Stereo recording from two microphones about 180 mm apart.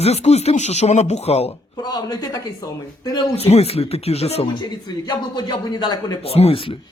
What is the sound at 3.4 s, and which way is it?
Speech, 35° left (ahead or behind).